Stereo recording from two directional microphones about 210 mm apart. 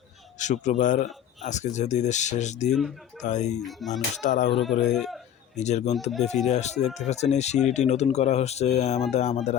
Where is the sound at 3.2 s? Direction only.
35° left (ahead or behind).